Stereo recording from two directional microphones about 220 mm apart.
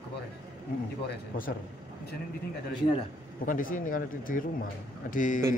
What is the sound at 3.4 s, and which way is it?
A man's voice, 40° left (ahead or behind).